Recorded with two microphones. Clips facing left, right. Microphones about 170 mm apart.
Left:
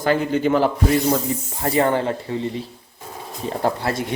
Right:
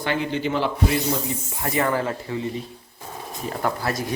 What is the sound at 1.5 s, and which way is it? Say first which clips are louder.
Speech: left 4 dB; 30° left (ahead or behind).